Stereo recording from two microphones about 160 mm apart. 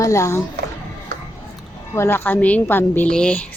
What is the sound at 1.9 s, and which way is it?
A woman's voice, 15° left (ahead or behind).